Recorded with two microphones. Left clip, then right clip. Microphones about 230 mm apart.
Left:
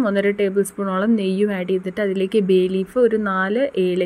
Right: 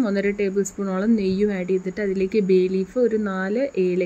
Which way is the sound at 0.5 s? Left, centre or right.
Centre.